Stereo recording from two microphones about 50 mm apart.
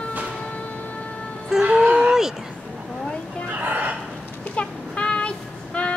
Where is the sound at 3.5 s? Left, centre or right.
Right.